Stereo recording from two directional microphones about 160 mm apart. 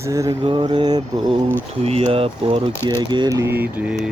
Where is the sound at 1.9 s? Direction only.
40° right (ahead or behind).